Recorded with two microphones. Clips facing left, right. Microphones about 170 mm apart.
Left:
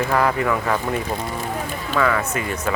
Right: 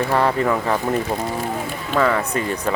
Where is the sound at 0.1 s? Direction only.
30° right (ahead or behind).